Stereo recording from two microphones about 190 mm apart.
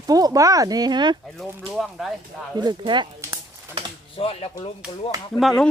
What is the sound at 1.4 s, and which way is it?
Speech, centre (ahead or behind).